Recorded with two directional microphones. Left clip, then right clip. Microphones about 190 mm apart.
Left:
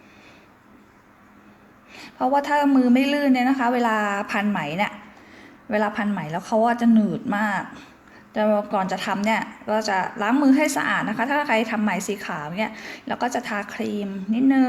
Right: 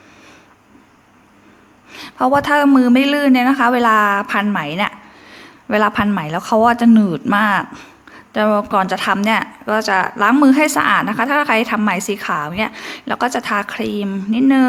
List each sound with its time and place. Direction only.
1.9 s speech: 25° right (ahead or behind)